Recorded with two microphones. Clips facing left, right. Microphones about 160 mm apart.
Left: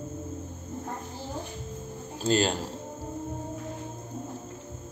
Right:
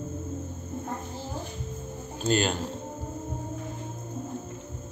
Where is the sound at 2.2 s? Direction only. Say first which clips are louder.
Left 1 dB; 30° left (ahead or behind).